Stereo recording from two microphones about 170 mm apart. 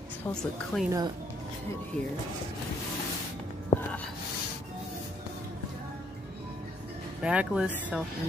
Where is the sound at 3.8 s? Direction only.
10° left (ahead or behind).